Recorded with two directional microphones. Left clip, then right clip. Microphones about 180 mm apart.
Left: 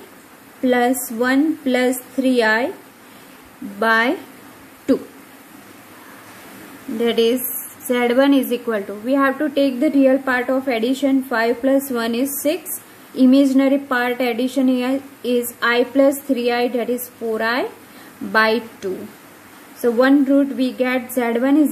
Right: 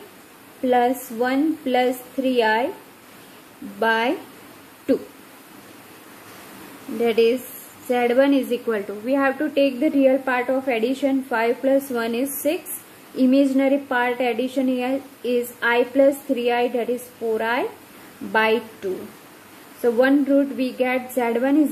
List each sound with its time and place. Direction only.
0.7 s a woman's voice: 20° left (ahead or behind)
3.8 s a woman's voice: 15° left (ahead or behind)
7.0 s a woman's voice: 10° left (ahead or behind)
19.8 s a woman's voice: 10° left (ahead or behind)